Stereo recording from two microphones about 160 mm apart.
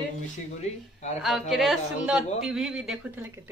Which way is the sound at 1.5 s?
Centre (ahead or behind).